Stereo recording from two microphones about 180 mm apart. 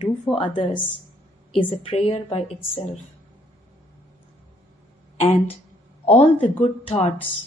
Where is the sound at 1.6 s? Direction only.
30° left (ahead or behind).